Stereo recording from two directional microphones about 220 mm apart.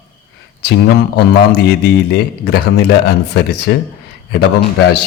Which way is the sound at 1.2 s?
45° left (ahead or behind).